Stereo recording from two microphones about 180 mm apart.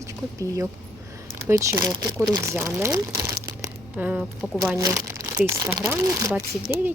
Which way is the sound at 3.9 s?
10° right (ahead or behind).